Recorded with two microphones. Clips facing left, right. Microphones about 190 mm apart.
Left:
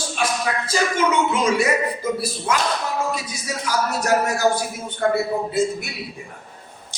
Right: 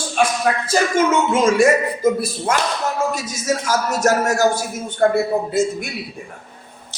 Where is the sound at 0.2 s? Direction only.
50° right (ahead or behind).